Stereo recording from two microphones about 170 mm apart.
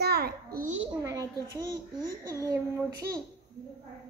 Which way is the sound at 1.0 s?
20° right (ahead or behind).